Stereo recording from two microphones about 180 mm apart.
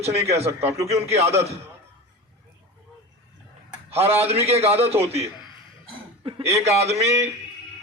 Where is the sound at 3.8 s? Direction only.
35° right (ahead or behind).